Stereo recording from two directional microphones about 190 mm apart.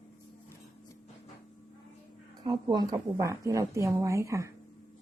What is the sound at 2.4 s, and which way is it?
A woman's voice, 20° right (ahead or behind).